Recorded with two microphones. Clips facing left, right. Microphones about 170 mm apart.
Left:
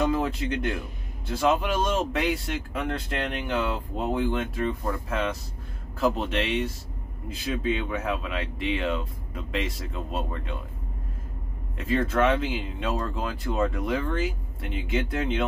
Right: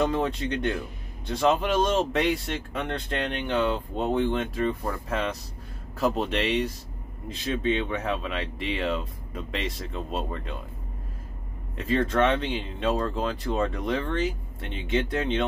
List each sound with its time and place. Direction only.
0.0 s speech: 5° left (ahead or behind)
11.7 s speech: 5° left (ahead or behind)